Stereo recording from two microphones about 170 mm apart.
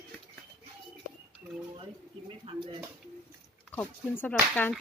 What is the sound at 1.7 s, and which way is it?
Speech, 30° right (ahead or behind).